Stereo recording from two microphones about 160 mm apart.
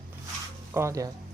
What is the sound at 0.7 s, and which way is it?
Speech, 20° right (ahead or behind).